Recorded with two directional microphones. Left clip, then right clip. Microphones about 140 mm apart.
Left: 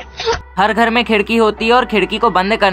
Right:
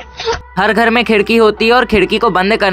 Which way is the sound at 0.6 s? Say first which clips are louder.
Right 2 dB; 45° right (ahead or behind).